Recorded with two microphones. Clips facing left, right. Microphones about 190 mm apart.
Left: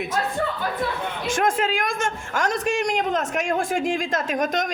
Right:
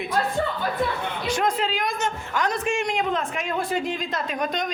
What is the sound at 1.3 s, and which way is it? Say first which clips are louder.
A man's voice: left 2 dB; 50° left (ahead or behind).